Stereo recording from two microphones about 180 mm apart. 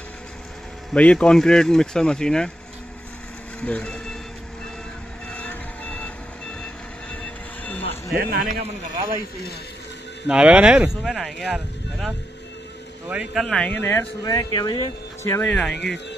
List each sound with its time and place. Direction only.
0.9 s speech: 5° left (ahead or behind)
3.6 s speech: 5° left (ahead or behind)
5.3 s reversing beeps: 10° left (ahead or behind)
7.6 s a sound: 10° left (ahead or behind)
8.2 s a man's voice: 55° right (ahead or behind)
10.2 s speech: 5° right (ahead or behind)
13.1 s speech: 5° right (ahead or behind)